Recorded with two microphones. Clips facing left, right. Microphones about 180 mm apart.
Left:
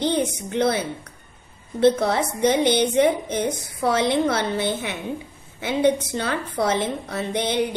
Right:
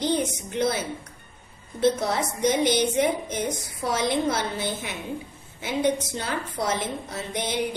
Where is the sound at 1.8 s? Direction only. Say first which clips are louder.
Left 5 dB; 60° left (ahead or behind).